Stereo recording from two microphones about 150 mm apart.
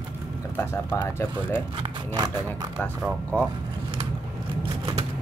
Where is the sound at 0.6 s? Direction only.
15° left (ahead or behind).